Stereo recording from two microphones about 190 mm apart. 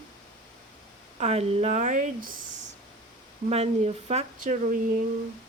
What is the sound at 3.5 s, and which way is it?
Speech, 35° right (ahead or behind).